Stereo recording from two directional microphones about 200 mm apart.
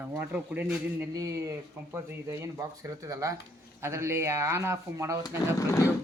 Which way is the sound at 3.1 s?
15° right (ahead or behind).